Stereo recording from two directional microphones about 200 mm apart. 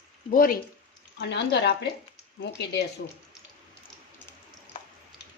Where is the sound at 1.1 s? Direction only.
60° left (ahead or behind).